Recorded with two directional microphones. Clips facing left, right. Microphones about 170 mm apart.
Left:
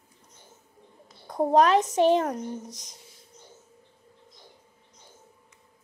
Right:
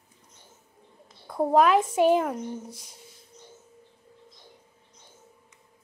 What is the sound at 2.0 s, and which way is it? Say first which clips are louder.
Speech: even; 10° right (ahead or behind).